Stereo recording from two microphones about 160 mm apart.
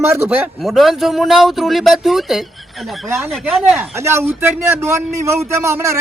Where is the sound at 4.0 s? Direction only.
15° right (ahead or behind).